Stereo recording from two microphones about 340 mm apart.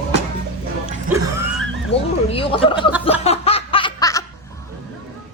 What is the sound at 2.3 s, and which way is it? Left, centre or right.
Speech, centre.